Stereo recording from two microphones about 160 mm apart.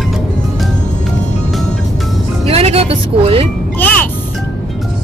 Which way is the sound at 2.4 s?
40° right (ahead or behind).